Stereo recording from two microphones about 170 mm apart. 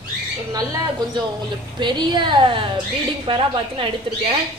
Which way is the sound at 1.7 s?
25° right (ahead or behind).